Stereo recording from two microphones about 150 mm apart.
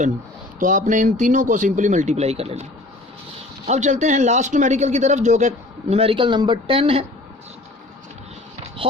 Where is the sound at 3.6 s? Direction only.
50° right (ahead or behind); by 7.0 s 35° right (ahead or behind).